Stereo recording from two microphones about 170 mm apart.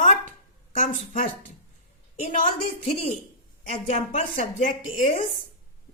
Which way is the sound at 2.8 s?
35° left (ahead or behind).